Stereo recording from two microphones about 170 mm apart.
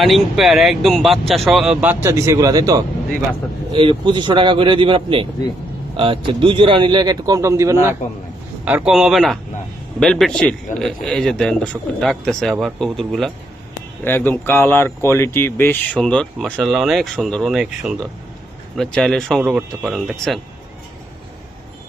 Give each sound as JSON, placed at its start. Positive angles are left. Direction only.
{"t": 0.0, "sound": "speech", "side_deg": 0}
{"t": 3.7, "sound": "a man's voice", "side_deg": -30}
{"t": 8.6, "sound": "speech", "side_deg": -5}
{"t": 14.0, "sound": "speech", "side_deg": 10}